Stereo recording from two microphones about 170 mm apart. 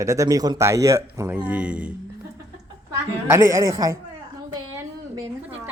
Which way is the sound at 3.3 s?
15° right (ahead or behind).